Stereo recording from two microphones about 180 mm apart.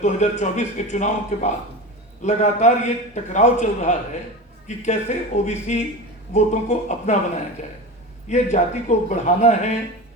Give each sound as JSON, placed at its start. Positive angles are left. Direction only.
{"t": 0.0, "sound": "speech", "side_deg": 40}
{"t": 8.3, "sound": "speech", "side_deg": 40}